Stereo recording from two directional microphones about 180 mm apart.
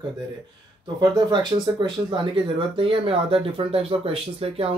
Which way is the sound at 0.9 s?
25° right (ahead or behind).